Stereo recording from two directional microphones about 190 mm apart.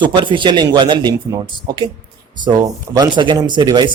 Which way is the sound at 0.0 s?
25° right (ahead or behind).